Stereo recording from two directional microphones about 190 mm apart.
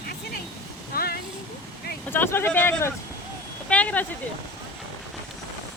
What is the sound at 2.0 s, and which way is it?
Speech, 10° left (ahead or behind).